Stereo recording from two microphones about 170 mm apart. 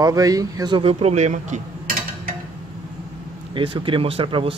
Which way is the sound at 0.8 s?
35° right (ahead or behind).